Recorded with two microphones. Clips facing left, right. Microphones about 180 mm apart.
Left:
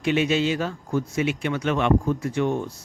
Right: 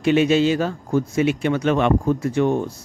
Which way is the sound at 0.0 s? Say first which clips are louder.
Right 5 dB; 40° right (ahead or behind).